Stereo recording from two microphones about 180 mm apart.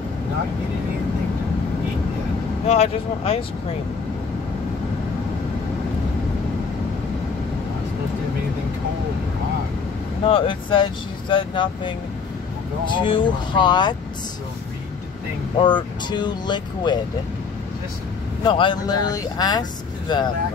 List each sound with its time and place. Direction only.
2.6 s speech: 35° left (ahead or behind)
10.2 s speech: 30° left (ahead or behind)
12.9 s speech: 30° left (ahead or behind)
15.6 s speech: 25° left (ahead or behind)
18.4 s speech: 25° left (ahead or behind)